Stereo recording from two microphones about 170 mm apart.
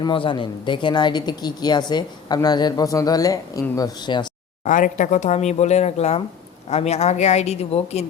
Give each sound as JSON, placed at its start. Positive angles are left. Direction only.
{"t": 0.0, "sound": "a woman's voice", "side_deg": 30}
{"t": 4.6, "sound": "speech", "side_deg": 45}